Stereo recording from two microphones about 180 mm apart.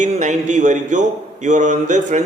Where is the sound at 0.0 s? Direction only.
40° right (ahead or behind).